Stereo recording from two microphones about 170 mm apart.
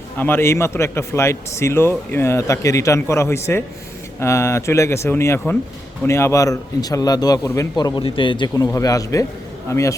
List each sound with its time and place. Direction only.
0.2 s a man's voice: 15° left (ahead or behind)